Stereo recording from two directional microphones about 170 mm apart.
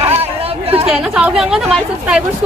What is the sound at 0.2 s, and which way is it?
Chatter, 35° right (ahead or behind).